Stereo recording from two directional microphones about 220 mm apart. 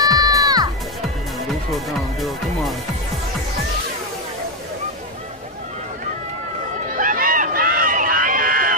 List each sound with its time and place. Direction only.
0.0 s music: 15° right (ahead or behind)
1.7 s speech: centre (ahead or behind)
6.9 s a sound: 40° right (ahead or behind)